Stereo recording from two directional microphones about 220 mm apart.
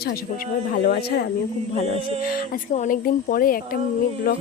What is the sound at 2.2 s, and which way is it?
Speech, 40° left (ahead or behind).